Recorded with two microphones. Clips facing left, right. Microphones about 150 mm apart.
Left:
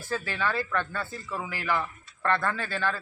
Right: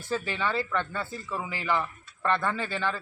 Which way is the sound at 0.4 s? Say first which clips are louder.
Left 2 dB; 20° right (ahead or behind).